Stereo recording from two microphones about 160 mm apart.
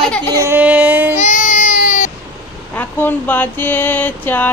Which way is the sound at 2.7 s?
10° left (ahead or behind).